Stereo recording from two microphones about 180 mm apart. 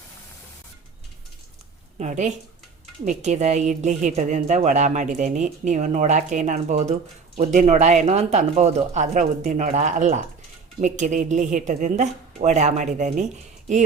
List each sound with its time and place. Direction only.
2.0 s a woman's voice: 40° right (ahead or behind)